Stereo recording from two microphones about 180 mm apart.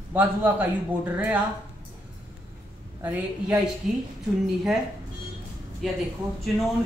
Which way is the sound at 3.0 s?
10° right (ahead or behind).